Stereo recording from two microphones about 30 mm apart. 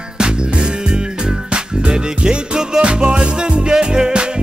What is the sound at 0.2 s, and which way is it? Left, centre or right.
Music, right.